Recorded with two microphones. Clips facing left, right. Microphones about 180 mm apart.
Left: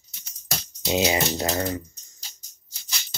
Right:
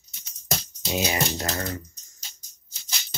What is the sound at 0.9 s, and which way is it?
Speech, 20° left (ahead or behind).